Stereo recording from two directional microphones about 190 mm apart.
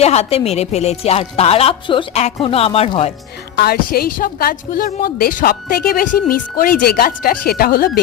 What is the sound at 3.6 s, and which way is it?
Speech, 55° left (ahead or behind).